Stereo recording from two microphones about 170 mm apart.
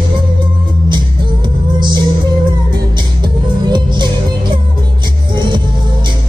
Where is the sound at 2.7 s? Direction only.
25° right (ahead or behind).